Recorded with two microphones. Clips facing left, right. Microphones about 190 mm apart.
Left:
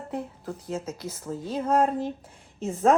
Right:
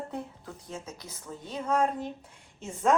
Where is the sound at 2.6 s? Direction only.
30° left (ahead or behind).